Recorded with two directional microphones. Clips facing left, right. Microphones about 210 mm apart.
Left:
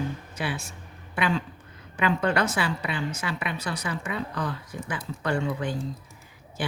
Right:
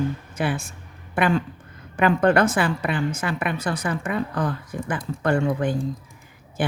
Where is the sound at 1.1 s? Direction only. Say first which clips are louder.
Right 5 dB; 50° right (ahead or behind).